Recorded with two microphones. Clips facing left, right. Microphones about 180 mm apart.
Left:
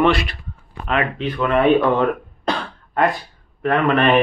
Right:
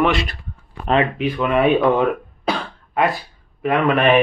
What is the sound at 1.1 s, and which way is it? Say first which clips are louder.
Speech: even; 10° right (ahead or behind).